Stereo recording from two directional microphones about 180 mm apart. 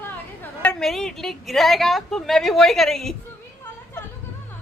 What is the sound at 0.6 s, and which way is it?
A woman's voice, 5° left (ahead or behind).